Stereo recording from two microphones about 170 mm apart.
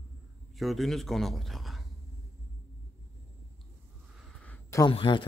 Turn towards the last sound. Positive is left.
turn(degrees=30)  # may be behind; listen again after turning